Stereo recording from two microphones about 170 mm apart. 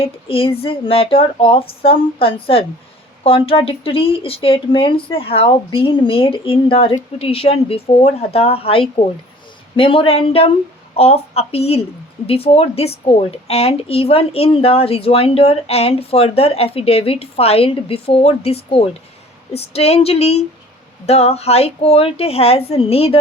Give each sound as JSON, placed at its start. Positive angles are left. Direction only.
{"t": 0.0, "sound": "a woman's voice", "side_deg": 35}